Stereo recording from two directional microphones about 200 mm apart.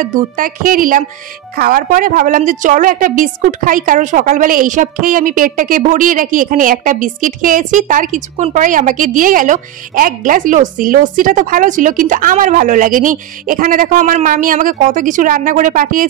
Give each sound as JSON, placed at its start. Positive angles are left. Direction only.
{"t": 0.0, "sound": "a woman's voice", "side_deg": -40}